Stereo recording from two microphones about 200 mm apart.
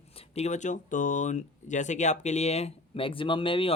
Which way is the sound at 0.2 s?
35° left (ahead or behind).